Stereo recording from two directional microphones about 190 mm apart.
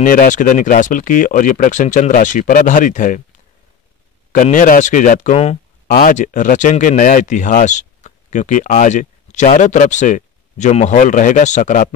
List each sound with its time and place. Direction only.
0.0 s speech: 45° left (ahead or behind)
4.3 s speech: 40° left (ahead or behind)
5.9 s speech: 50° left (ahead or behind)